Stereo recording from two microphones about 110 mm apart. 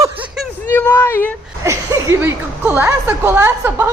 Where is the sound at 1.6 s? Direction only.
30° right (ahead or behind).